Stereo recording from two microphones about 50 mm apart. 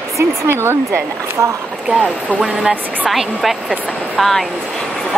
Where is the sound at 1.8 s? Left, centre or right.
Right.